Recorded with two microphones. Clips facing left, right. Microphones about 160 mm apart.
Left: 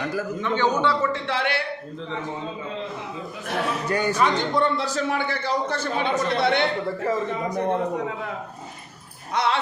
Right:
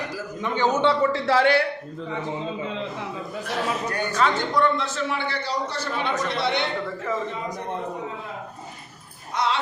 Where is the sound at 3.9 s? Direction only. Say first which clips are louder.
Left 3 dB; 10° left (ahead or behind).